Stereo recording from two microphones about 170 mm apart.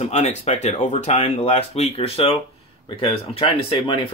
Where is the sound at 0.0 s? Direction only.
40° left (ahead or behind).